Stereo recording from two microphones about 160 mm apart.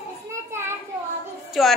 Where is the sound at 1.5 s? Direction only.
Centre (ahead or behind).